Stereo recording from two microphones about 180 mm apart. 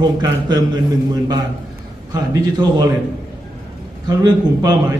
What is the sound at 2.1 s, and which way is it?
Speech, 20° right (ahead or behind).